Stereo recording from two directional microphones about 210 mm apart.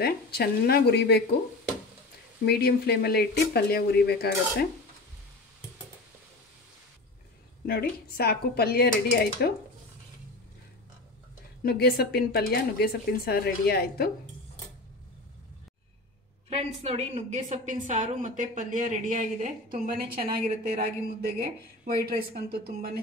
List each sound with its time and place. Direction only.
0.0 s speech: 50° left (ahead or behind)
2.4 s speech: 50° left (ahead or behind)
7.6 s speech: 45° left (ahead or behind)
11.6 s speech: 50° left (ahead or behind)
16.4 s a woman's voice: 30° right (ahead or behind); by 22.6 s 45° right (ahead or behind)